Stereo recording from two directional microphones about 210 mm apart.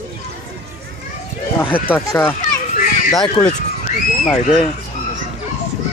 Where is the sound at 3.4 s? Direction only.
15° left (ahead or behind).